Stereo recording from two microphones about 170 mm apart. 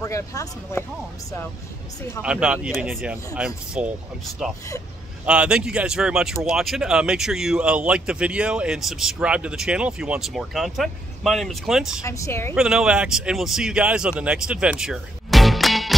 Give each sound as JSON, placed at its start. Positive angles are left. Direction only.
{"t": 0.0, "sound": "speech", "side_deg": 20}
{"t": 2.2, "sound": "speech", "side_deg": -5}
{"t": 5.2, "sound": "speech", "side_deg": -5}
{"t": 12.0, "sound": "speech", "side_deg": 15}
{"t": 12.5, "sound": "speech", "side_deg": -5}